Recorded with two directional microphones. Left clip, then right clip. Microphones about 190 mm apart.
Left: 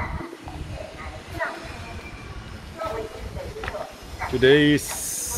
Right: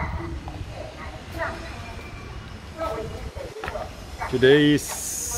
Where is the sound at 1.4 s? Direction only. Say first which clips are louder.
Left 1 dB; 60° right (ahead or behind).